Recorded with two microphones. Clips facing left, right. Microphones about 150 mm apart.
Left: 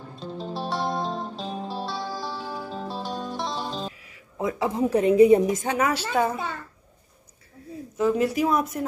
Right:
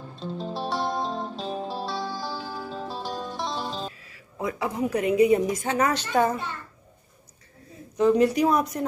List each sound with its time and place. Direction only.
0.2 s music: centre (ahead or behind)
3.9 s speech: 15° left (ahead or behind)
5.7 s a woman's voice: 10° left (ahead or behind)
8.0 s speech: 5° left (ahead or behind)